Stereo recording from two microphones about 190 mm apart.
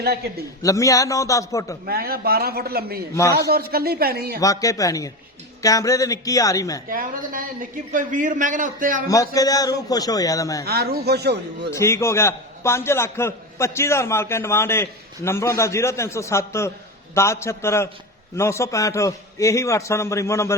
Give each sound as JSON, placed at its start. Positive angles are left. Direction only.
{"t": 0.0, "sound": "a man's voice", "side_deg": -55}
{"t": 0.6, "sound": "a man's voice", "side_deg": 15}
{"t": 1.8, "sound": "a man's voice", "side_deg": -55}
{"t": 4.4, "sound": "a man's voice", "side_deg": 15}
{"t": 6.8, "sound": "a man's voice", "side_deg": -45}
{"t": 9.0, "sound": "a man's voice", "side_deg": 20}
{"t": 10.7, "sound": "a man's voice", "side_deg": -55}
{"t": 11.7, "sound": "a man's voice", "side_deg": 15}